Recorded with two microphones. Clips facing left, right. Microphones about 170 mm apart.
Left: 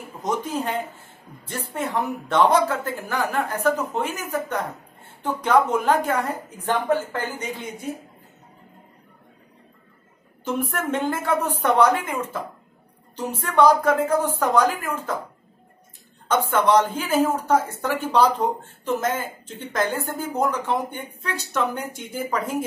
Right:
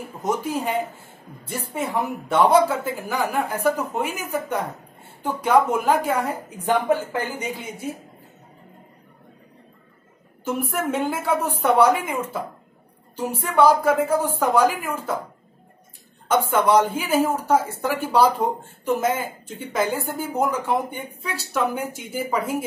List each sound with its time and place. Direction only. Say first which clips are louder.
0.2 s speech: right 1 dB; 10° right (ahead or behind)
10.4 s speech: right 1 dB; 10° right (ahead or behind)
16.3 s speech: right 1 dB; 10° right (ahead or behind)